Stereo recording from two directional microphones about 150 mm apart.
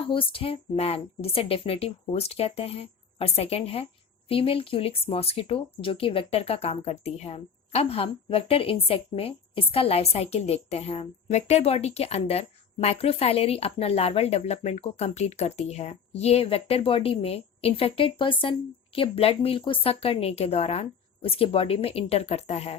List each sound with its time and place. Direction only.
0.1 s speech: 35° left (ahead or behind)